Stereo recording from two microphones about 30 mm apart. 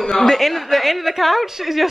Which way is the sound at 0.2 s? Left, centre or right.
Centre.